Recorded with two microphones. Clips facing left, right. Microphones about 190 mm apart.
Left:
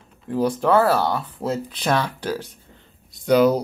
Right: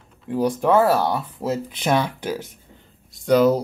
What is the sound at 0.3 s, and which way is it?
Speech, 10° right (ahead or behind).